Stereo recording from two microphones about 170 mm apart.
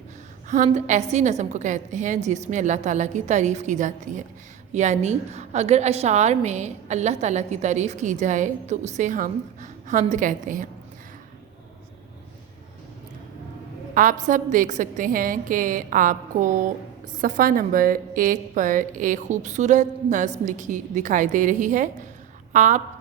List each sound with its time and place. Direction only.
0.4 s a woman's voice: 45° right (ahead or behind)
13.9 s a woman's voice: 50° right (ahead or behind)